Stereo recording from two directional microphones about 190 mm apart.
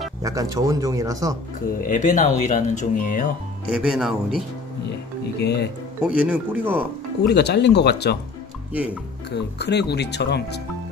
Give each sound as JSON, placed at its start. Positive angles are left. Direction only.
{"t": 0.2, "sound": "speech", "side_deg": -15}
{"t": 1.8, "sound": "speech", "side_deg": 45}
{"t": 3.7, "sound": "speech", "side_deg": -5}
{"t": 5.4, "sound": "speech", "side_deg": 60}
{"t": 6.0, "sound": "speech", "side_deg": -5}
{"t": 7.2, "sound": "speech", "side_deg": 60}
{"t": 9.3, "sound": "speech", "side_deg": 60}